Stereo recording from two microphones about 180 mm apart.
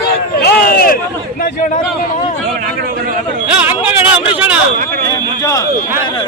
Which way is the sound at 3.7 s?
10° right (ahead or behind).